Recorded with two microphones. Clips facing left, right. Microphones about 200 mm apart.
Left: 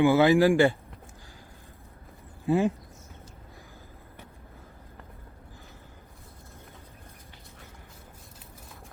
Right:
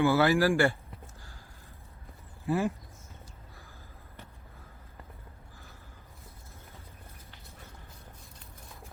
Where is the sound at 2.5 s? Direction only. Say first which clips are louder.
Left 5 dB; 20° left (ahead or behind).